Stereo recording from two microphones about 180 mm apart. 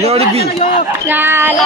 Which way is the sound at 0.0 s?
35° right (ahead or behind).